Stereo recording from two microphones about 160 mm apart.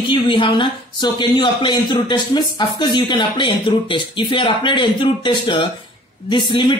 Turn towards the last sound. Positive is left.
turn(degrees=30)  # may be behind; listen again after turning